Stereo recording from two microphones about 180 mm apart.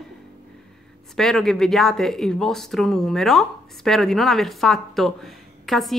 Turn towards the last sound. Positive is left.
turn(degrees=0)  # may be behind; listen again after turning